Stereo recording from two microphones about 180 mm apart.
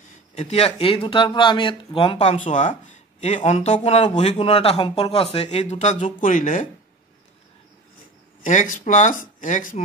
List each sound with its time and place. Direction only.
0.3 s speech: 35° left (ahead or behind)
2.3 s speech: 45° left (ahead or behind)
8.4 s speech: 45° left (ahead or behind)